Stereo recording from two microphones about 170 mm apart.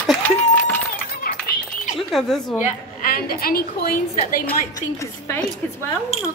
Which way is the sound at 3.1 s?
60° left (ahead or behind).